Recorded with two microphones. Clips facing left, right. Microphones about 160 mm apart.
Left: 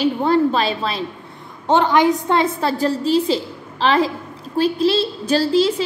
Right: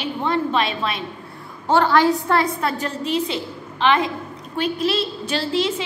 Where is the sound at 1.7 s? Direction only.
20° left (ahead or behind).